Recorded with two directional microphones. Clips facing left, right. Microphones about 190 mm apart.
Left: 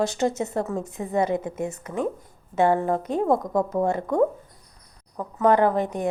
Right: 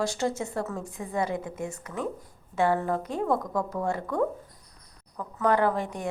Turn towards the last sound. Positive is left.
turn(degrees=20)  # may be behind; listen again after turning